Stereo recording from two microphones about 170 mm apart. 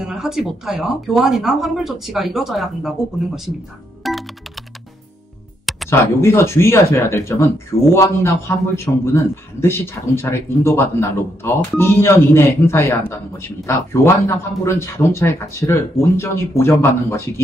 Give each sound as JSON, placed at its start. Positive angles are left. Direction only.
{"t": 0.0, "sound": "speech", "side_deg": -5}
{"t": 4.0, "sound": "music", "side_deg": 0}
{"t": 5.9, "sound": "a man's voice", "side_deg": 15}